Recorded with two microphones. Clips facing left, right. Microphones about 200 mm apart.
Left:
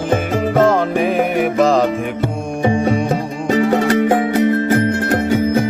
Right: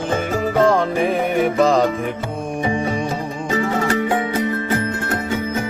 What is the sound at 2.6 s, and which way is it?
Music, 70° left (ahead or behind).